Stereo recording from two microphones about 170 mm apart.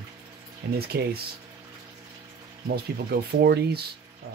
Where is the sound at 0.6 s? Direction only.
75° right (ahead or behind).